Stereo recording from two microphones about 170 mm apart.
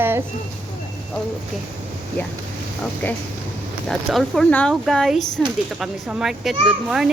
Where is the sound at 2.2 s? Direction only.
10° left (ahead or behind).